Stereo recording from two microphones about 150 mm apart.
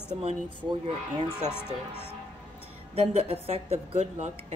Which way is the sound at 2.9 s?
45° right (ahead or behind).